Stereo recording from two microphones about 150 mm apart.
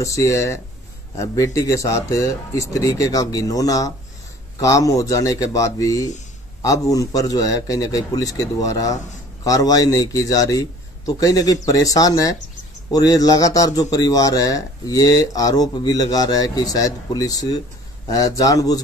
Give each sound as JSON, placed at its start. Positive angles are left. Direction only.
{"t": 0.0, "sound": "a man's voice", "side_deg": 20}